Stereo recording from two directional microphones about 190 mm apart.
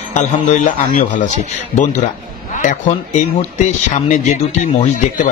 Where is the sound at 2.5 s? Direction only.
40° left (ahead or behind).